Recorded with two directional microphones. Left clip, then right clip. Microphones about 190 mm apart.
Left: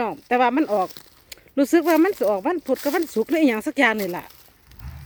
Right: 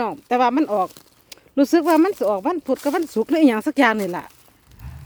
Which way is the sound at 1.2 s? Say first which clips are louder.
Right 2 dB; 5° right (ahead or behind).